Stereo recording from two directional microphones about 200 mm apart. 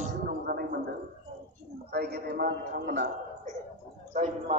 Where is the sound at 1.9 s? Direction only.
55° right (ahead or behind).